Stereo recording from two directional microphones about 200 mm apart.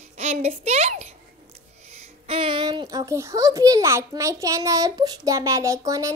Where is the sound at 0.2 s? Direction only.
35° right (ahead or behind).